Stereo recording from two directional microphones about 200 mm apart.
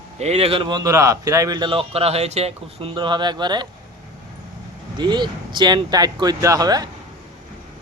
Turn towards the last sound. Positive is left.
turn(degrees=-20)  # may be behind; listen again after turning